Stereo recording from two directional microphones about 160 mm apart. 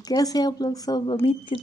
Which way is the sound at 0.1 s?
25° left (ahead or behind).